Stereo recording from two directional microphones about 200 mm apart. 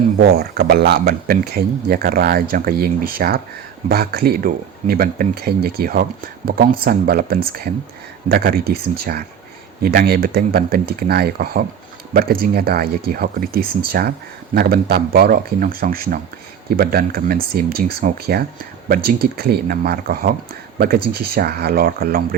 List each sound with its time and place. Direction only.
0.2 s speech: 50° right (ahead or behind)